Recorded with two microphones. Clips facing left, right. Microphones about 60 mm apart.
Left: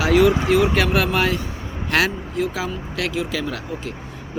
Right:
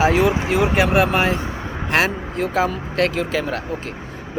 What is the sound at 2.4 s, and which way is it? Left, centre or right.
A man's voice, right.